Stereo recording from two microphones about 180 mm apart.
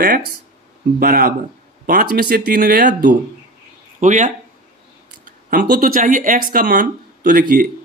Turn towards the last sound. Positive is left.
turn(degrees=-50)  # may be behind; listen again after turning